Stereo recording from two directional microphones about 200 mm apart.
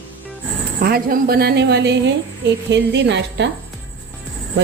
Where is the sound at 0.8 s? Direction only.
50° right (ahead or behind).